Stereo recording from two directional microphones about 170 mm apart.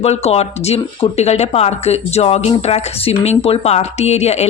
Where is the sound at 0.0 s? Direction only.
40° left (ahead or behind).